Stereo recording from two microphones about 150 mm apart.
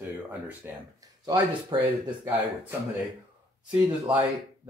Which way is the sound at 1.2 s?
25° right (ahead or behind).